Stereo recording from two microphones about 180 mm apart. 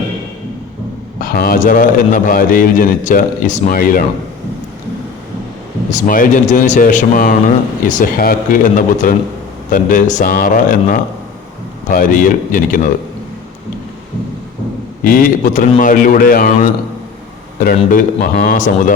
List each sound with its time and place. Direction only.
1.2 s a man's voice: 50° left (ahead or behind)
5.9 s a man's voice: 45° left (ahead or behind)
15.0 s a man's voice: 50° left (ahead or behind)
17.9 s a man's voice: 45° left (ahead or behind)